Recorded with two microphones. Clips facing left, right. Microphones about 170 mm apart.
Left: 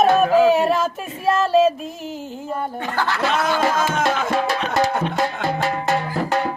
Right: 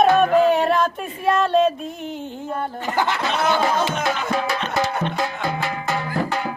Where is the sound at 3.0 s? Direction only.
20° right (ahead or behind).